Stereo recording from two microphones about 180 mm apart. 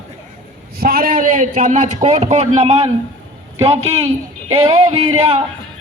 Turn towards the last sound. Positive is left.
turn(degrees=-35)  # may be behind; listen again after turning